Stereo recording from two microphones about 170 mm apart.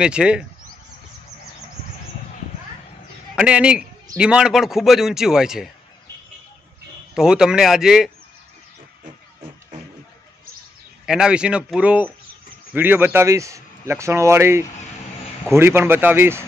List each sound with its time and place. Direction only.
0.0 s a man's voice: 5° right (ahead or behind)
3.3 s a man's voice: 5° right (ahead or behind)
7.2 s a man's voice: 5° right (ahead or behind)
11.1 s a man's voice: 5° right (ahead or behind)